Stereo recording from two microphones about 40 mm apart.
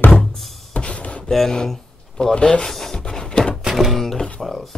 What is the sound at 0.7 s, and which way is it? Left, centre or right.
Music, left.